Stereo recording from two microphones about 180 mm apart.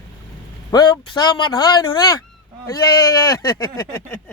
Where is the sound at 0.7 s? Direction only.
20° left (ahead or behind).